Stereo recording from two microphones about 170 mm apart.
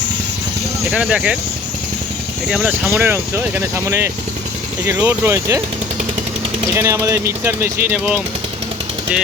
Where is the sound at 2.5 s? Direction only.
5° right (ahead or behind).